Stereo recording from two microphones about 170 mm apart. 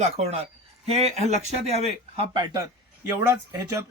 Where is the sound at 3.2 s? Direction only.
15° right (ahead or behind).